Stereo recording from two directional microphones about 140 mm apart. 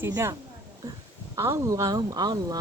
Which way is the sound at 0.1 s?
20° right (ahead or behind).